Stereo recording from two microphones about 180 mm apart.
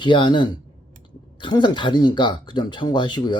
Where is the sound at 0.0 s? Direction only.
25° left (ahead or behind).